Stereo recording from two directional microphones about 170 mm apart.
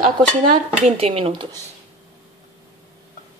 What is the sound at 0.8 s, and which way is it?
Speech, 35° right (ahead or behind).